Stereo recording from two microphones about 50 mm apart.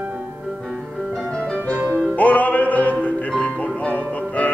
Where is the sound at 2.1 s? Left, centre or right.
Left.